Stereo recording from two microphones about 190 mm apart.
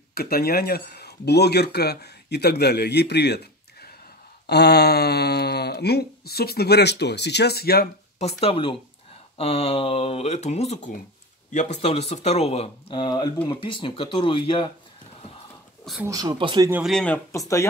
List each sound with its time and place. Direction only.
0.1 s speech: 55° left (ahead or behind)
4.5 s speech: 60° left (ahead or behind)
8.2 s speech: 35° left (ahead or behind)
15.8 s speech: centre (ahead or behind)
16.1 s speech: 20° right (ahead or behind)
16.7 s speech: centre (ahead or behind); by 17.6 s 15° left (ahead or behind)